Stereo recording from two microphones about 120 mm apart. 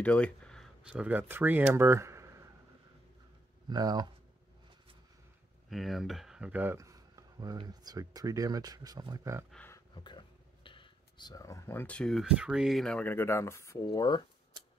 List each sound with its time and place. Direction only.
0.0 s speech: 10° left (ahead or behind)
0.8 s speech: 10° right (ahead or behind)
3.6 s speech: 35° right (ahead or behind)
5.7 s speech: centre (ahead or behind)
6.8 s a sound: 25° right (ahead or behind)
7.6 s speech: 30° right (ahead or behind)
9.9 s speech: 40° left (ahead or behind)